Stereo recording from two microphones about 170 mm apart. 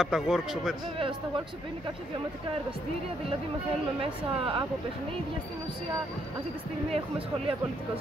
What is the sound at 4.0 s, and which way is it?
Speech, 30° right (ahead or behind).